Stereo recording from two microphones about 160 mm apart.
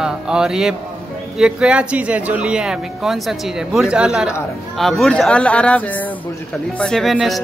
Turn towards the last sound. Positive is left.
turn(degrees=0)  # may be behind; listen again after turning